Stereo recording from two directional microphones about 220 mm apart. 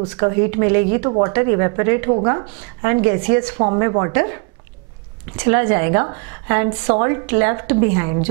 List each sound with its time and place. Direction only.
0.0 s a woman's voice: 15° right (ahead or behind)
3.5 s speech: 25° right (ahead or behind)
5.4 s a woman's voice: 15° right (ahead or behind)